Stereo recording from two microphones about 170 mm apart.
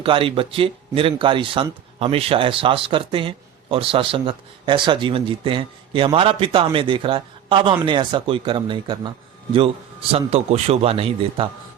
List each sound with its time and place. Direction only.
0.0 s speech: 30° right (ahead or behind)